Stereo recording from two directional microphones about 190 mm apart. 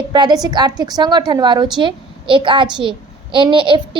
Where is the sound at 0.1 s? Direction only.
20° right (ahead or behind).